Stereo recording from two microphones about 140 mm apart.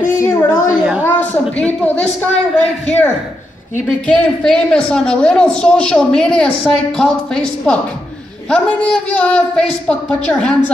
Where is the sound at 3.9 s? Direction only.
10° left (ahead or behind).